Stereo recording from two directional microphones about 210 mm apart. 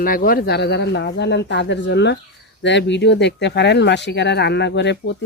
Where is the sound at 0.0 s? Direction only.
40° left (ahead or behind).